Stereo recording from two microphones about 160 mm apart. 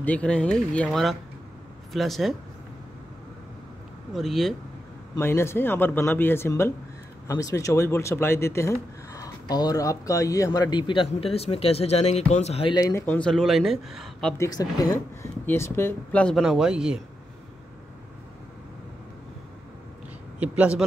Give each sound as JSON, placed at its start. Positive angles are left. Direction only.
{"t": 0.0, "sound": "speech", "side_deg": 10}
{"t": 4.1, "sound": "speech", "side_deg": 0}
{"t": 5.1, "sound": "speech", "side_deg": 15}
{"t": 12.7, "sound": "speech", "side_deg": 20}
{"t": 13.0, "sound": "speech", "side_deg": 10}
{"t": 14.4, "sound": "speech", "side_deg": 25}
{"t": 20.3, "sound": "speech", "side_deg": -10}